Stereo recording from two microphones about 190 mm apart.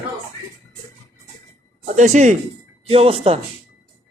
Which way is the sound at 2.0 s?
40° right (ahead or behind).